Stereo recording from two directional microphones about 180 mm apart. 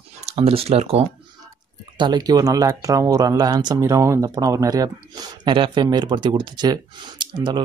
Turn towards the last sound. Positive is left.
turn(degrees=-25)  # may be behind; listen again after turning